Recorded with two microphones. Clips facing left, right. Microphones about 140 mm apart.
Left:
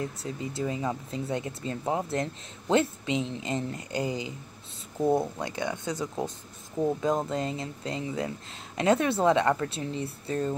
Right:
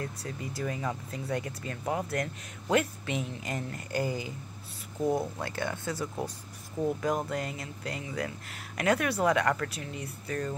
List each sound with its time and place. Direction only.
0.0 s speech: 25° left (ahead or behind)